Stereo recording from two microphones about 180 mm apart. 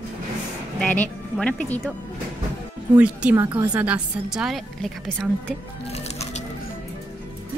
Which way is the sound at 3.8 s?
5° right (ahead or behind).